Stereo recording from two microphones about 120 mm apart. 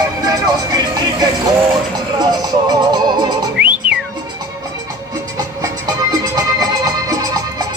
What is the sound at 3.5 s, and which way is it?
Whistling, 5° right (ahead or behind).